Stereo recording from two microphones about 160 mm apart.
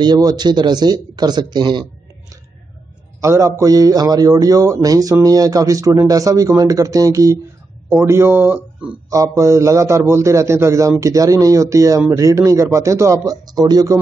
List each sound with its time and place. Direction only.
0.0 s a man's voice: 25° right (ahead or behind)
3.2 s a man's voice: 20° right (ahead or behind)